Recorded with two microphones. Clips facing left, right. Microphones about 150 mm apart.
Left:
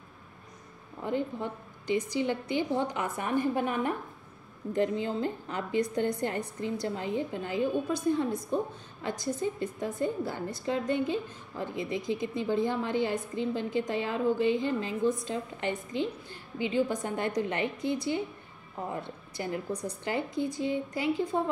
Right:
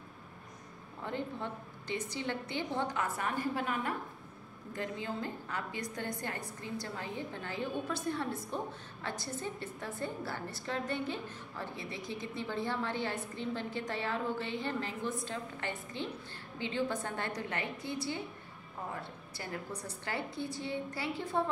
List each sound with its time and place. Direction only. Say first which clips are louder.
1.0 s a woman's voice: left 6 dB; 15° left (ahead or behind)